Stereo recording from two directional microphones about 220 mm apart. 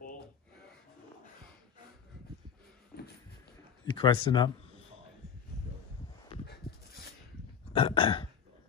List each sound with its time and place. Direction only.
3.9 s speech: 25° left (ahead or behind)
6.4 s dog: 45° left (ahead or behind)
7.7 s burping: 25° left (ahead or behind)